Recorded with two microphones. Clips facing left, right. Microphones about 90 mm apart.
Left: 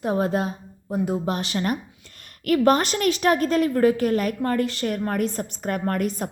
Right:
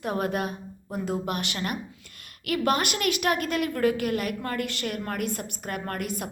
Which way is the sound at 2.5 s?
35° left (ahead or behind).